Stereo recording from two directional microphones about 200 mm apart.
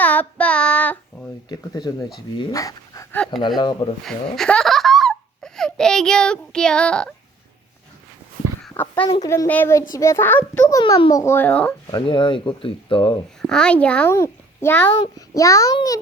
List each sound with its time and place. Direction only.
0.0 s child singing: 10° left (ahead or behind)
1.5 s speech: 20° left (ahead or behind)
4.0 s speech: 5° left (ahead or behind)
8.7 s a sound: 10° left (ahead or behind)
9.1 s a child's voice: 15° left (ahead or behind)
11.9 s speech: 25° left (ahead or behind)
13.5 s a child's voice: 5° left (ahead or behind)